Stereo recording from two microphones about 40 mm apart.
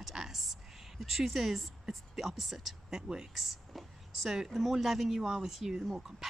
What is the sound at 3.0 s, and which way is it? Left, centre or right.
Speech, right.